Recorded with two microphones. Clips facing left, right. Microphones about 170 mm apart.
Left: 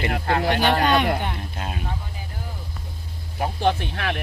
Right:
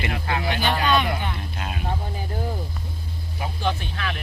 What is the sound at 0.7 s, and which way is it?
Speech, 45° left (ahead or behind).